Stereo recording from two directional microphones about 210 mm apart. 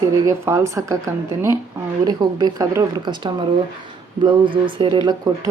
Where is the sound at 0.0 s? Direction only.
15° right (ahead or behind).